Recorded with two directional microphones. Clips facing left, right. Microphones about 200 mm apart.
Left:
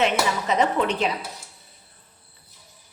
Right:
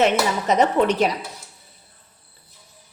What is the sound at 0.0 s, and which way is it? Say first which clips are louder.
Speech: right 3 dB; 40° right (ahead or behind).